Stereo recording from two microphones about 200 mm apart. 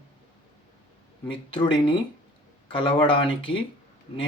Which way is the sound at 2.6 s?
25° left (ahead or behind).